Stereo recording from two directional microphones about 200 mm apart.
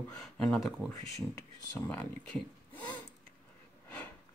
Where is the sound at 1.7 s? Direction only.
10° left (ahead or behind).